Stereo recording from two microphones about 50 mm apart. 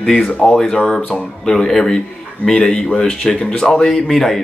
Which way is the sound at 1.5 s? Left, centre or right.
Centre.